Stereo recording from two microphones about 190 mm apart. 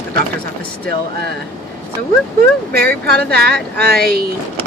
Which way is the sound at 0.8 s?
60° right (ahead or behind).